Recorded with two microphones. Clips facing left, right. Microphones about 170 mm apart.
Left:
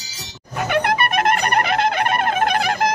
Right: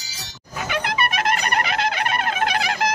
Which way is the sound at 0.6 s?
55° left (ahead or behind).